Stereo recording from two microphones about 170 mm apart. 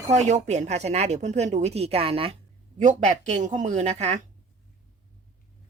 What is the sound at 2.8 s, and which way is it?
Speech, 45° right (ahead or behind).